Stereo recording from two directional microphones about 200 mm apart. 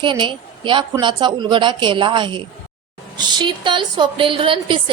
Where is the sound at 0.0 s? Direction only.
25° right (ahead or behind).